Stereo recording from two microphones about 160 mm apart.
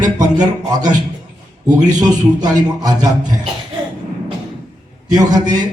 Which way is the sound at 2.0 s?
25° right (ahead or behind).